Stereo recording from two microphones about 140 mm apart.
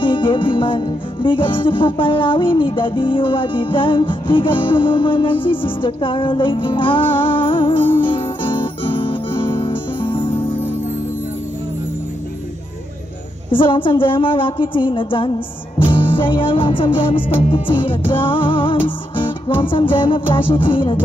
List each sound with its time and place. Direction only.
0.0 s music: 35° left (ahead or behind)
8.0 s guitar: 35° left (ahead or behind)
13.5 s music: 40° left (ahead or behind)